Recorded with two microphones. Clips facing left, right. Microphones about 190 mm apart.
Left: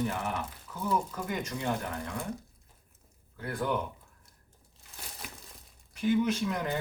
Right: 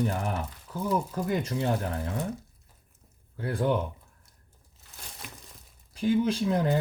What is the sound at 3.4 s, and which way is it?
Speech, 30° right (ahead or behind).